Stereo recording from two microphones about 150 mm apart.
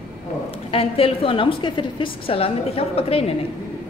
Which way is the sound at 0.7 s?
40° left (ahead or behind).